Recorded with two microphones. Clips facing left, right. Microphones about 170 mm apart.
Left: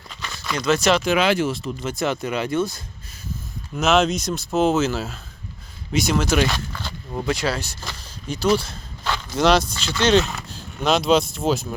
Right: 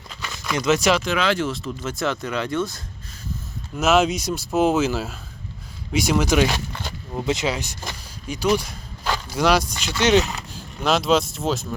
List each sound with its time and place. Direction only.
0.5 s speech: 15° right (ahead or behind)
1.0 s speech: 15° left (ahead or behind)
1.9 s speech: centre (ahead or behind); by 10.2 s 15° right (ahead or behind)
10.8 s speech: centre (ahead or behind)